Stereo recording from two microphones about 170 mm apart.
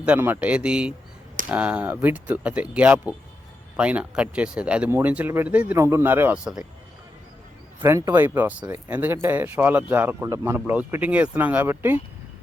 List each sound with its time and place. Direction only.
0.0 s a man's voice: 10° right (ahead or behind)
7.9 s a man's voice: 15° right (ahead or behind)